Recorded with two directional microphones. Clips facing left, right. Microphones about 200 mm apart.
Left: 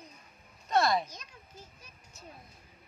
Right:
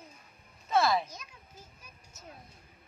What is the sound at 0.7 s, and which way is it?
Speech, centre (ahead or behind).